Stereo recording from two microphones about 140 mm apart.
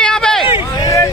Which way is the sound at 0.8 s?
25° left (ahead or behind).